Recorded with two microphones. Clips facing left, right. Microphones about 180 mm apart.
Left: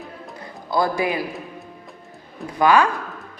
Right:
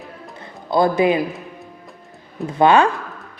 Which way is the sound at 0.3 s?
25° right (ahead or behind).